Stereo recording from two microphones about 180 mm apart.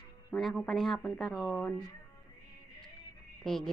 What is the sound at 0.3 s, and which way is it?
Speech, 5° left (ahead or behind).